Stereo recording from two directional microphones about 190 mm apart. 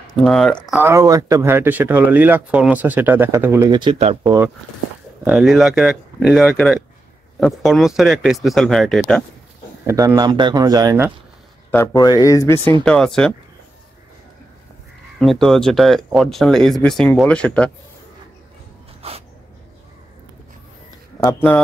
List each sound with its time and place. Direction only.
0.2 s speech: centre (ahead or behind)
0.7 s speech: 15° right (ahead or behind); by 4.3 s 30° right (ahead or behind)
5.2 s speech: 5° right (ahead or behind)
9.8 s speech: 15° right (ahead or behind)
11.7 s speech: 15° left (ahead or behind)
12.8 s speech: 5° left (ahead or behind)
15.1 s speech: centre (ahead or behind)
21.2 s speech: 10° left (ahead or behind)